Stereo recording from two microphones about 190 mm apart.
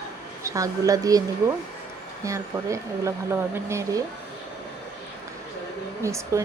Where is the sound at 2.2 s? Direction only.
15° right (ahead or behind).